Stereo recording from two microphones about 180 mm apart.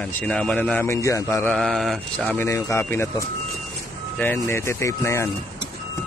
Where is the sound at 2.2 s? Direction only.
15° left (ahead or behind).